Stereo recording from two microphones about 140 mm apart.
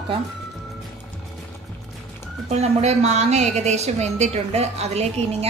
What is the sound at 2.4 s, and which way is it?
A woman's voice, 50° right (ahead or behind).